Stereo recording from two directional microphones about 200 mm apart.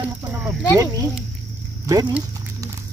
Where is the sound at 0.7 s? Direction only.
15° right (ahead or behind).